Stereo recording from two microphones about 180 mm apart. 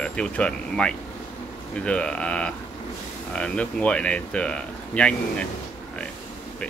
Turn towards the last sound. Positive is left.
turn(degrees=5)  # may be behind; listen again after turning